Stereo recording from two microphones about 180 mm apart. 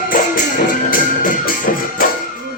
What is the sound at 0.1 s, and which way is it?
Music, 50° left (ahead or behind).